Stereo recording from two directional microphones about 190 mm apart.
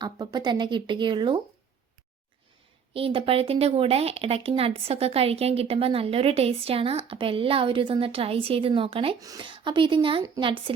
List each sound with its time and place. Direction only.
0.0 s speech: 20° right (ahead or behind)
2.9 s speech: 30° right (ahead or behind)